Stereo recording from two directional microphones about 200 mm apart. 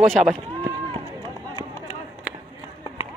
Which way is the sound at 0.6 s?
30° right (ahead or behind).